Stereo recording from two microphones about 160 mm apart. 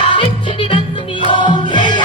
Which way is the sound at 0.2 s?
35° left (ahead or behind).